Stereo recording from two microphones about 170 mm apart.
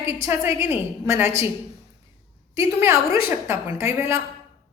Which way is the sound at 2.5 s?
15° right (ahead or behind).